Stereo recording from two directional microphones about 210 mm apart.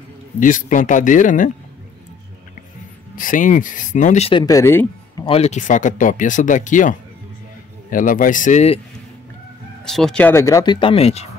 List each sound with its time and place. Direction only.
0.4 s speech: 40° left (ahead or behind)
3.2 s speech: 40° left (ahead or behind); by 5.2 s 15° left (ahead or behind)
5.2 s speech: 30° left (ahead or behind)
9.8 s speech: centre (ahead or behind); by 11.2 s 30° left (ahead or behind)